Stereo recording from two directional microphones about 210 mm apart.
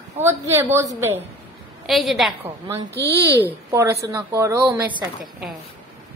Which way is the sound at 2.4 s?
10° right (ahead or behind).